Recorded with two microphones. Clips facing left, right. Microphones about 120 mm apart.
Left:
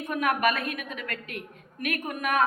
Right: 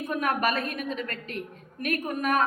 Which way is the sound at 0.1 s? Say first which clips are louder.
Left 2 dB; 35° right (ahead or behind).